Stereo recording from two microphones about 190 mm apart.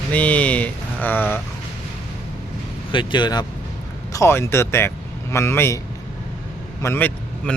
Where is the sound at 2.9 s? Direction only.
25° left (ahead or behind).